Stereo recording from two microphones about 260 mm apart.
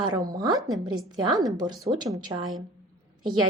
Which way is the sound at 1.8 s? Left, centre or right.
Centre.